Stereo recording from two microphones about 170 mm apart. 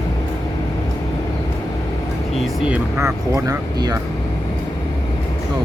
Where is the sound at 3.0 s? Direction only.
20° right (ahead or behind).